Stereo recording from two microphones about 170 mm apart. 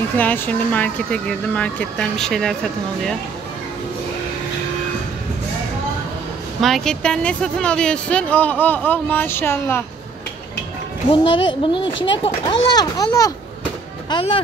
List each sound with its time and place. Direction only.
0.2 s speech: 10° left (ahead or behind)
6.6 s speech: centre (ahead or behind)
11.1 s a child's voice: 30° left (ahead or behind)
14.1 s speech: 35° left (ahead or behind)